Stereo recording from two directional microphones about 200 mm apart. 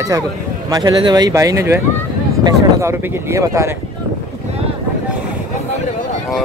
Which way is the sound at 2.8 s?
10° right (ahead or behind).